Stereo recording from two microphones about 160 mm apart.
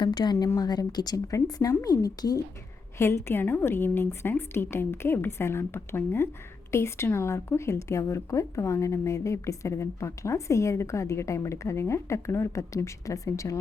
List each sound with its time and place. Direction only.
0.0 s a woman's voice: 25° left (ahead or behind)